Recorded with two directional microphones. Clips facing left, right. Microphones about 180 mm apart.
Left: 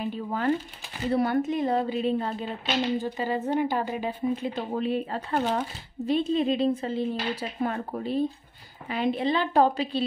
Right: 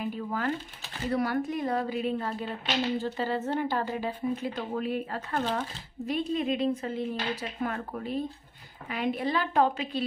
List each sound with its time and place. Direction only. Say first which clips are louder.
0.0 s a sound: left 2 dB; 25° left (ahead or behind)
1.0 s speech: left 4 dB; 25° left (ahead or behind)
9.5 s a woman's voice: left 4 dB; 35° left (ahead or behind)